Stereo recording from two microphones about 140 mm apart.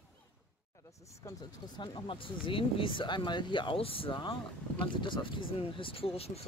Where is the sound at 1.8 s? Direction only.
35° left (ahead or behind).